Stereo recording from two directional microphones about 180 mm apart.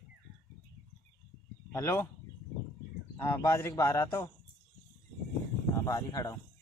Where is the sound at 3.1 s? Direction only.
15° left (ahead or behind).